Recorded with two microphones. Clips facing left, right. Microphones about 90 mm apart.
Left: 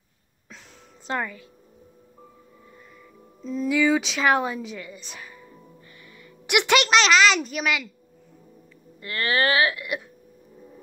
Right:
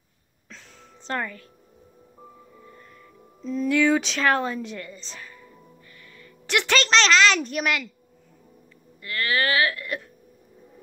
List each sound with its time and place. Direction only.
1.0 s a woman's voice: 10° left (ahead or behind)
3.4 s a woman's voice: centre (ahead or behind)
9.0 s speech: 30° left (ahead or behind)
9.8 s a woman's voice: 10° left (ahead or behind)